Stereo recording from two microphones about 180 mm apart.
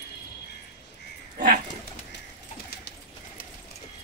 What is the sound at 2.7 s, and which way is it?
Pigeon, 60° left (ahead or behind).